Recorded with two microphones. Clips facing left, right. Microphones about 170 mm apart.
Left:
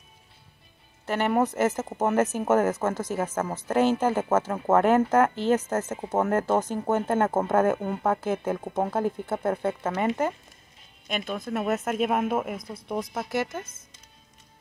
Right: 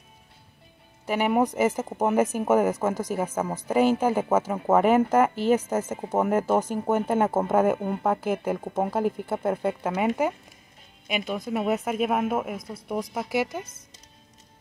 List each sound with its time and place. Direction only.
1.0 s speech: 10° right (ahead or behind)